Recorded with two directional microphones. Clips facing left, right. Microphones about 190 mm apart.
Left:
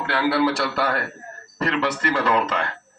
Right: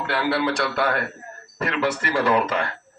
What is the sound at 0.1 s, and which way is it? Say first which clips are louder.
Speech: left 3 dB; 5° left (ahead or behind).